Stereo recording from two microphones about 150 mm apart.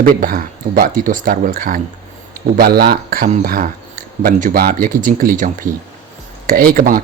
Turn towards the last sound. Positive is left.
turn(degrees=-75)  # may be behind; listen again after turning